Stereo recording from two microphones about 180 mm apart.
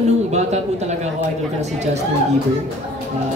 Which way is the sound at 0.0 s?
40° right (ahead or behind).